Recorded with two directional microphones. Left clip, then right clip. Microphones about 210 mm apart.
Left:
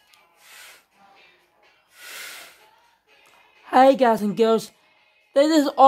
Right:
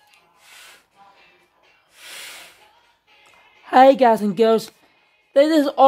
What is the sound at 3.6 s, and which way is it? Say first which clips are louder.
Speech: right 3 dB; centre (ahead or behind).